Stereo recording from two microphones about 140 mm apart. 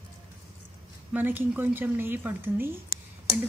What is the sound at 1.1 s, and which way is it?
A woman's voice, 15° right (ahead or behind).